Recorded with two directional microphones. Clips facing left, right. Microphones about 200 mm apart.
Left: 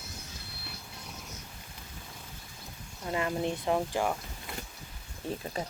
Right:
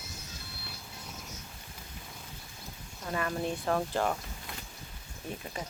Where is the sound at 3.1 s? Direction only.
20° left (ahead or behind).